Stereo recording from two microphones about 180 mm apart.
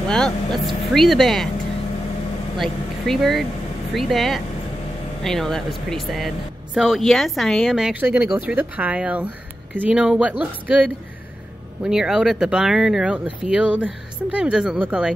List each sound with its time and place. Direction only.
0.1 s speech: 5° left (ahead or behind)
2.5 s speech: centre (ahead or behind)